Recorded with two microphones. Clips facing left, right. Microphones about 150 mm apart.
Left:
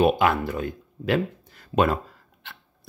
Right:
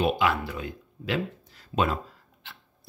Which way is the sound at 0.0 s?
50° left (ahead or behind).